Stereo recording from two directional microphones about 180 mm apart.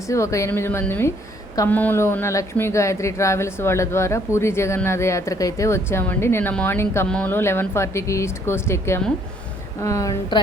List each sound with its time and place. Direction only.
0.1 s a woman's voice: 15° left (ahead or behind)